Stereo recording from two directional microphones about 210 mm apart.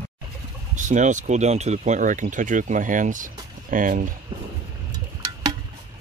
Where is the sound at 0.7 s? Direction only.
35° right (ahead or behind).